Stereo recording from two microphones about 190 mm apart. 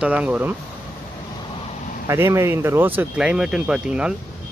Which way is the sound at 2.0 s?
15° right (ahead or behind).